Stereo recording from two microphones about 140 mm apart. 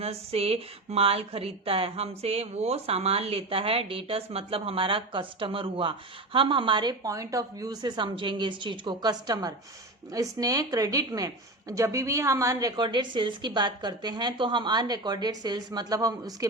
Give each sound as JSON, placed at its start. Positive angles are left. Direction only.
{"t": 0.0, "sound": "a woman's voice", "side_deg": -45}